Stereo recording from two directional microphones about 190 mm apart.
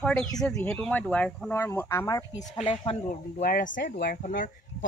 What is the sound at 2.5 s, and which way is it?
Speech, 30° left (ahead or behind).